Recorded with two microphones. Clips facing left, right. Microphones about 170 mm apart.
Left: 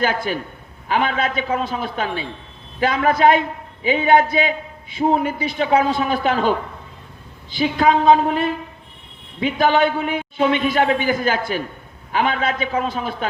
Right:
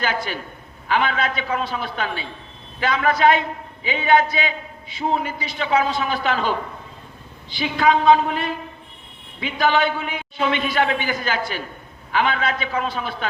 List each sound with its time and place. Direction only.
0.0 s a man's voice: 45° left (ahead or behind)
7.5 s a man's voice: 45° left (ahead or behind)